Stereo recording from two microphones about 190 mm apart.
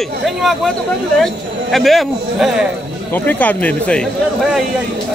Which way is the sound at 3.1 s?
10° left (ahead or behind).